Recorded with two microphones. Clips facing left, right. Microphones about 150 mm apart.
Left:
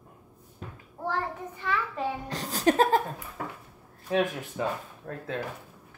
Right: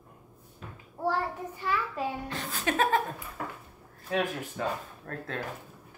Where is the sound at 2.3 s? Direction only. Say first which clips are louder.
Left 7 dB; 40° left (ahead or behind).